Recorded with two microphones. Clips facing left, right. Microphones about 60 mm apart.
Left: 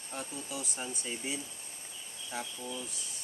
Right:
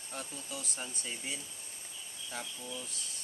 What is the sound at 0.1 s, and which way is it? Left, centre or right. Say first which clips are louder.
Speech: left 3 dB; centre.